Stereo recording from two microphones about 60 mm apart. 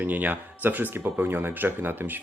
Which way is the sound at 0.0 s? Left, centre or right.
Right.